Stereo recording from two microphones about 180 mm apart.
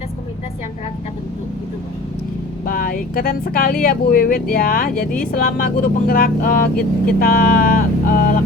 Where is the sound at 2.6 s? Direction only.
50° left (ahead or behind).